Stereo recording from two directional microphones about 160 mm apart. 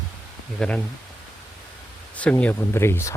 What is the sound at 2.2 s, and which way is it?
Speech, 10° left (ahead or behind).